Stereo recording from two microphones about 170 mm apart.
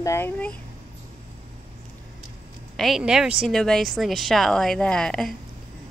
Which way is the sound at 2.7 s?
Centre (ahead or behind).